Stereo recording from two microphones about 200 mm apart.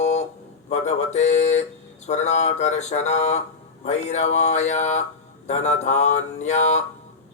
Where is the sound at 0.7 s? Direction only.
35° left (ahead or behind).